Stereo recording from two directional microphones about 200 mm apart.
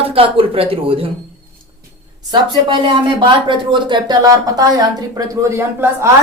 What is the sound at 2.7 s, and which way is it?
A woman's voice, 25° right (ahead or behind).